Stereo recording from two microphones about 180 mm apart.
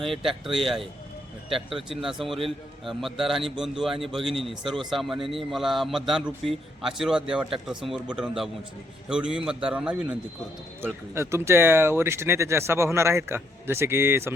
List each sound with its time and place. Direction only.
0.0 s a man's voice: centre (ahead or behind)
0.4 s speech: 30° right (ahead or behind)
2.0 s a man's voice: centre (ahead or behind)